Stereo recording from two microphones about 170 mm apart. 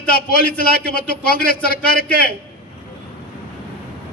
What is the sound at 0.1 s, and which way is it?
A man's voice, 60° left (ahead or behind).